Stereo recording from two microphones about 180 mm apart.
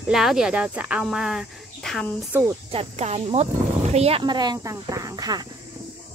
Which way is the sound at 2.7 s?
35° right (ahead or behind).